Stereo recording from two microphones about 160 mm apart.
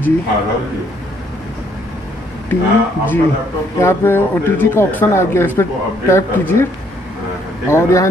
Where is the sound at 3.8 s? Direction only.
15° left (ahead or behind).